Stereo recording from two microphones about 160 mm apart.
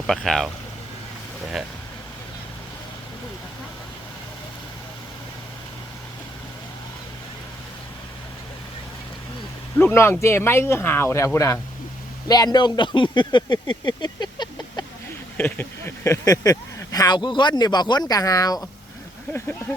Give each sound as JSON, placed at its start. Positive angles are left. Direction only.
{"t": 0.1, "sound": "speech", "side_deg": 5}
{"t": 1.6, "sound": "speech", "side_deg": 0}
{"t": 9.7, "sound": "speech", "side_deg": 15}
{"t": 15.4, "sound": "speech", "side_deg": 10}